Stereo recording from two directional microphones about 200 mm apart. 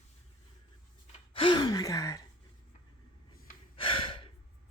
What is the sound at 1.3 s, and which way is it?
Gasp, 25° left (ahead or behind).